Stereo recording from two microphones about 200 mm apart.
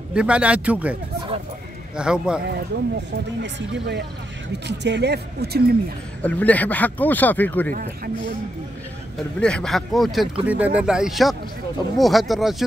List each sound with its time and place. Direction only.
0.1 s speech: 5° right (ahead or behind)
2.0 s speech: 5° right (ahead or behind)
2.7 s speech: 55° right (ahead or behind)
6.2 s speech: 5° left (ahead or behind)
9.4 s speech: 5° left (ahead or behind)